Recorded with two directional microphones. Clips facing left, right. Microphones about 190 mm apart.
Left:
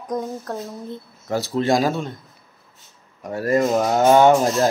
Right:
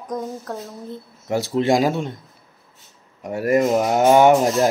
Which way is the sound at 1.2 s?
25° right (ahead or behind).